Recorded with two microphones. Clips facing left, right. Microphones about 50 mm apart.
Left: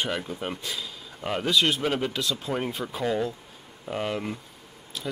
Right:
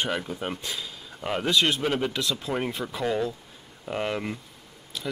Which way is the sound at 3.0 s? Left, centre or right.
Centre.